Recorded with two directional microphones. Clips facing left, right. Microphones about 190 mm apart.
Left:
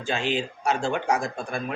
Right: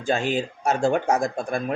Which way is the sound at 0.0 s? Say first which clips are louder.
Right 3 dB; 45° right (ahead or behind).